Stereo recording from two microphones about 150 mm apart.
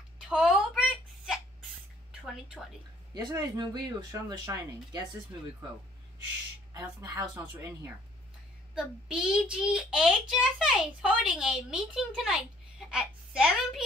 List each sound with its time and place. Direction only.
0.3 s a sound: 5° right (ahead or behind)
2.6 s a child's voice: centre (ahead or behind)
3.2 s speech: 25° right (ahead or behind)
6.7 s speech: 20° right (ahead or behind)
8.7 s a child's voice: 5° right (ahead or behind)
12.9 s a sound: 5° right (ahead or behind)